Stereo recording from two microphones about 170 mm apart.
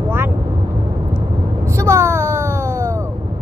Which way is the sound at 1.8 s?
15° right (ahead or behind).